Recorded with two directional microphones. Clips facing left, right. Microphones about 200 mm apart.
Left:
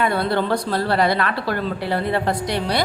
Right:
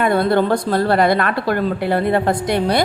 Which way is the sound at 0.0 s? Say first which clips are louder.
Right 5 dB; 50° right (ahead or behind).